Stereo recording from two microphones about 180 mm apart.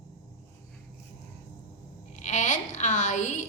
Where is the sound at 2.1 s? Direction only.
45° left (ahead or behind).